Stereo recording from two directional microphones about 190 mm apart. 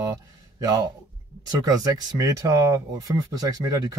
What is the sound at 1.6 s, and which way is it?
Speech, 20° right (ahead or behind).